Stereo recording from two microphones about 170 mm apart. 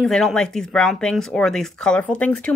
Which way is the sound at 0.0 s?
5° left (ahead or behind).